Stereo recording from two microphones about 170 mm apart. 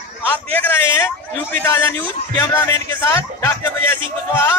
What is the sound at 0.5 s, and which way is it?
A man's voice, 10° left (ahead or behind).